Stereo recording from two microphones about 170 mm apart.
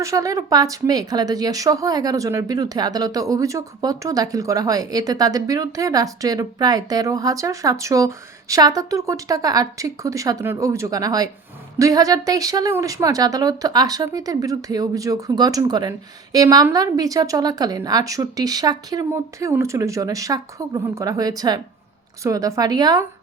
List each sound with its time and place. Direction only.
0.0 s speech: 20° right (ahead or behind)